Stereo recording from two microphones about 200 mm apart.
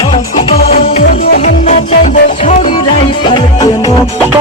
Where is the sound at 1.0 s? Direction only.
45° left (ahead or behind); by 3.9 s 20° left (ahead or behind).